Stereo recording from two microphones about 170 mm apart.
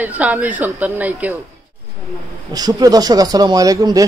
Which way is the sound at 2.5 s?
20° right (ahead or behind).